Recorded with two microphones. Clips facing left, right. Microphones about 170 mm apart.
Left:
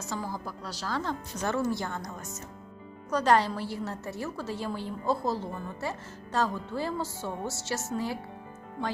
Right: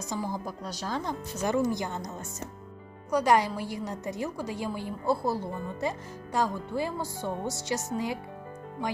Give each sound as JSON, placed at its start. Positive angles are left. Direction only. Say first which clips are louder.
{"t": 0.0, "sound": "a woman's voice", "louder": "right 2 dB", "side_deg": -15}